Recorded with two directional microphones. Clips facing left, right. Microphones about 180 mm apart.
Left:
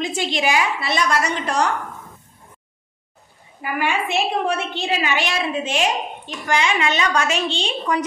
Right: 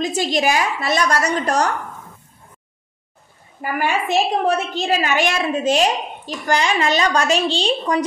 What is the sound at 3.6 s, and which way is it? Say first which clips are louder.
A woman's voice: right 2 dB; 40° right (ahead or behind).